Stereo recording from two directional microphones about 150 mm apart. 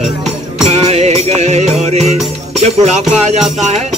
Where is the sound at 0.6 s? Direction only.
45° right (ahead or behind).